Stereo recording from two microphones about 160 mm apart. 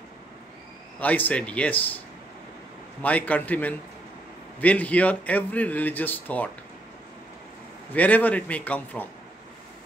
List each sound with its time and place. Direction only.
0.9 s a man's voice: 10° left (ahead or behind)
3.0 s a man's voice: 10° left (ahead or behind)
7.9 s a man's voice: 10° left (ahead or behind)